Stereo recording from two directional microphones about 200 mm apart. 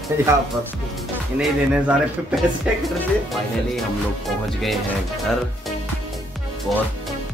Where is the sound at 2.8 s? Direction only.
Centre (ahead or behind).